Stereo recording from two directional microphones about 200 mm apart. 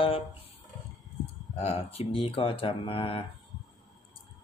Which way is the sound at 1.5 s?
30° left (ahead or behind).